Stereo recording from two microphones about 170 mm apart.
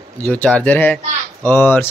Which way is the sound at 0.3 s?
10° left (ahead or behind).